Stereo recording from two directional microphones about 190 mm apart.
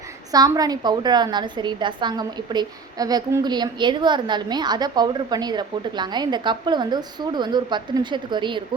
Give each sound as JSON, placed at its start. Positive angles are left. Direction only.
{"t": 0.3, "sound": "a woman's voice", "side_deg": -20}